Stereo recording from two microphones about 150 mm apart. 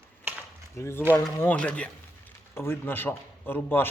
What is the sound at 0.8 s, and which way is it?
A man's voice, 15° left (ahead or behind).